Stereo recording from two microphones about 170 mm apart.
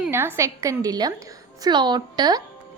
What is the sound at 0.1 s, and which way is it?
A woman's voice, 15° right (ahead or behind).